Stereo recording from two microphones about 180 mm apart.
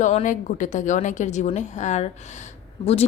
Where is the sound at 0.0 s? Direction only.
40° left (ahead or behind).